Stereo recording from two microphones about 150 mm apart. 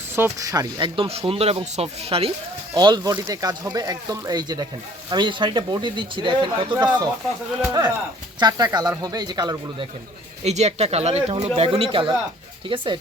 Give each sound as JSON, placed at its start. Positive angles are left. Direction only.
{"t": 0.2, "sound": "speech", "side_deg": -20}
{"t": 2.7, "sound": "speech", "side_deg": -25}
{"t": 10.4, "sound": "speech", "side_deg": -45}